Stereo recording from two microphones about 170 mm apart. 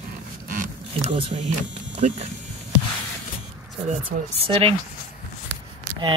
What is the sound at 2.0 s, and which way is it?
Speech, 40° right (ahead or behind).